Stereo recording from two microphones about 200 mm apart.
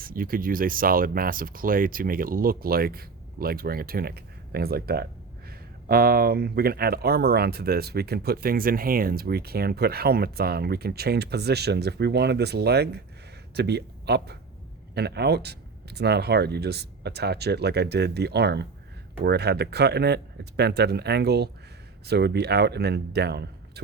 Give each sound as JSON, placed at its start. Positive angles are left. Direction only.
{"t": 0.0, "sound": "a man's voice", "side_deg": -45}